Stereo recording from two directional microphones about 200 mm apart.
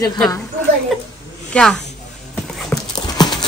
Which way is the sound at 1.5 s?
5° left (ahead or behind).